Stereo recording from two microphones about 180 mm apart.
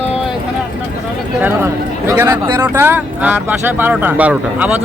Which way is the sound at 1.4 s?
10° right (ahead or behind).